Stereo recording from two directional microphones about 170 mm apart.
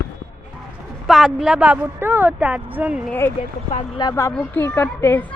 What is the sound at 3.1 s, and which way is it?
Speech, 10° left (ahead or behind).